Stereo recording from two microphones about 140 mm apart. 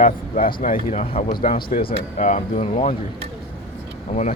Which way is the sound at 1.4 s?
85° left.